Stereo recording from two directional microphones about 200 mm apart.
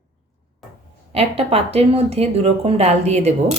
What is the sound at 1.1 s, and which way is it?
Speech, 30° right (ahead or behind).